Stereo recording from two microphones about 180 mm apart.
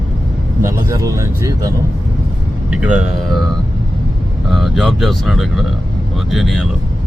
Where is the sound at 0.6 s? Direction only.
15° right (ahead or behind).